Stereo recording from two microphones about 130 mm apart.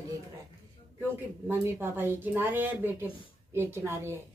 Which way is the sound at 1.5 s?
15° right (ahead or behind).